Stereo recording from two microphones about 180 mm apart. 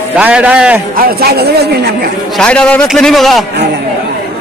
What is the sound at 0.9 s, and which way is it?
A woman's voice, 55° right (ahead or behind).